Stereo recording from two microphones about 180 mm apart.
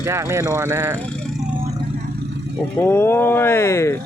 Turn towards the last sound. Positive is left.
turn(degrees=15)  # may be behind; listen again after turning